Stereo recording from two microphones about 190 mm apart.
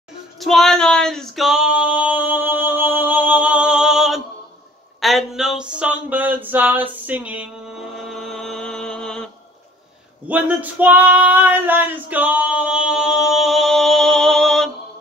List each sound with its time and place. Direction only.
0.4 s female singing: centre (ahead or behind)
5.0 s a sound: centre (ahead or behind)
7.9 s mantra: centre (ahead or behind)
10.2 s female singing: 10° right (ahead or behind)